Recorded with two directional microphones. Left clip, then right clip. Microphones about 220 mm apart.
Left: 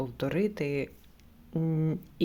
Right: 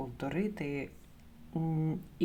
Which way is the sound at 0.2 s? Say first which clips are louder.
Left 7 dB; 35° left (ahead or behind).